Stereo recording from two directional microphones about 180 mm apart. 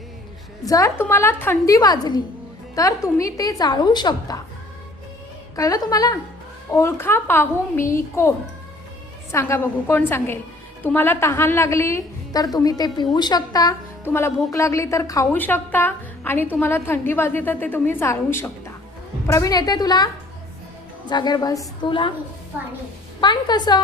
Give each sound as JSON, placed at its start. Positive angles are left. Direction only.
{"t": 0.6, "sound": "a woman's voice", "side_deg": 20}
{"t": 5.5, "sound": "a woman's voice", "side_deg": 20}
{"t": 9.3, "sound": "a woman's voice", "side_deg": 15}
{"t": 21.1, "sound": "a woman's voice", "side_deg": 25}
{"t": 23.2, "sound": "a woman's voice", "side_deg": 25}